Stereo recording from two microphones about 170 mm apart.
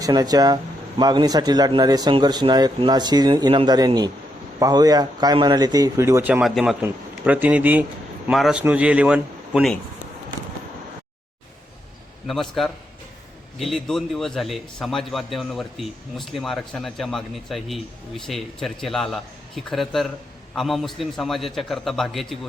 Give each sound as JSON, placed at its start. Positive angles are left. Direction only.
{"t": 0.0, "sound": "speech", "side_deg": -20}
{"t": 6.4, "sound": "a man's voice", "side_deg": 0}
{"t": 12.3, "sound": "a man's voice", "side_deg": 0}